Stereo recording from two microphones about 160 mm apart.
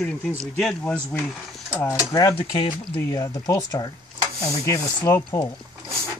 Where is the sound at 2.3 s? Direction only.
35° left (ahead or behind).